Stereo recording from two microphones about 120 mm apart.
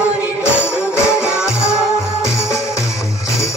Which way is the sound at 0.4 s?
20° left (ahead or behind).